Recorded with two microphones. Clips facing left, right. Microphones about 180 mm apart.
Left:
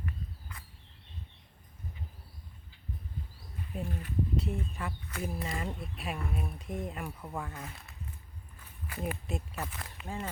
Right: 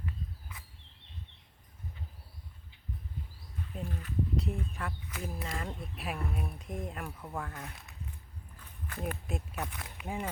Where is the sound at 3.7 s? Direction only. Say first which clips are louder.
Left 1 dB; 10° left (ahead or behind).